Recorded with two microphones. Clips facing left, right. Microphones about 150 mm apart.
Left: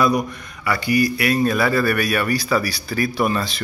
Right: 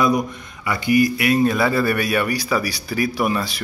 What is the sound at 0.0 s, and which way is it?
Speech, 20° right (ahead or behind).